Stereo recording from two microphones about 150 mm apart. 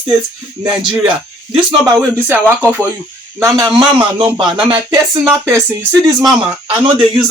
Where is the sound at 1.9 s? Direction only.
10° right (ahead or behind).